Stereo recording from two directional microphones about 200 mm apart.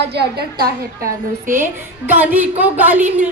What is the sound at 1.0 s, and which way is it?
A woman's voice, 10° right (ahead or behind).